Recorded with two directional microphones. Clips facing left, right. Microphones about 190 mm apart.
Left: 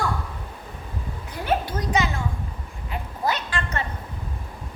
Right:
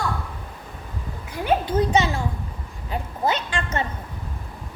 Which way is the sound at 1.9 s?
30° right (ahead or behind).